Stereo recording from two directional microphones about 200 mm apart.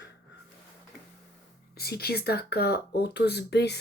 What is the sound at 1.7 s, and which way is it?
Speech, 50° left (ahead or behind).